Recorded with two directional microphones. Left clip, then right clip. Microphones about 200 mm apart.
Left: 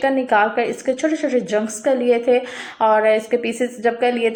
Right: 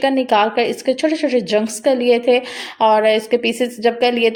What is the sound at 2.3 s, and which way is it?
A woman's voice, 45° right (ahead or behind).